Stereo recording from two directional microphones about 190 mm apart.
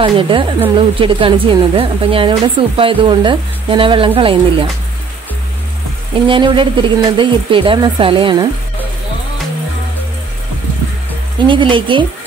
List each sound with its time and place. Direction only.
0.0 s speech: 25° right (ahead or behind)
6.2 s speech: 25° right (ahead or behind)
11.4 s speech: 25° right (ahead or behind)